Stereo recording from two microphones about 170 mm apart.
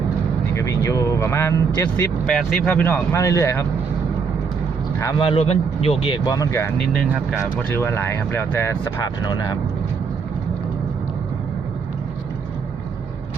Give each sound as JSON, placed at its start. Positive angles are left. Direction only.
{"t": 0.5, "sound": "speech", "side_deg": 20}
{"t": 2.2, "sound": "speech", "side_deg": 0}
{"t": 4.9, "sound": "speech", "side_deg": 25}
{"t": 6.7, "sound": "speech", "side_deg": 0}
{"t": 7.7, "sound": "speech", "side_deg": 15}